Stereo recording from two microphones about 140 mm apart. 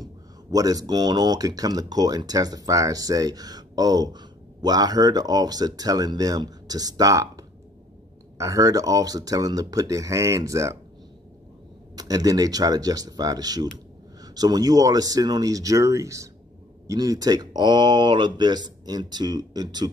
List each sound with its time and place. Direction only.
0.0 s speech: 25° right (ahead or behind)
11.9 s speech: 25° right (ahead or behind)